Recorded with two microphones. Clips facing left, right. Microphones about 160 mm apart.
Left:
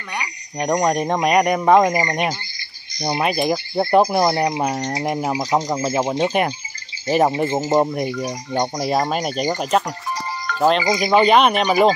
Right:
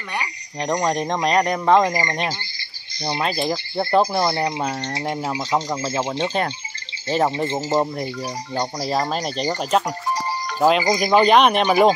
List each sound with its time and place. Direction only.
0.6 s speech: 10° left (ahead or behind)
8.1 s speech: 35° right (ahead or behind)
8.5 s speech: 15° left (ahead or behind); by 11.9 s centre (ahead or behind)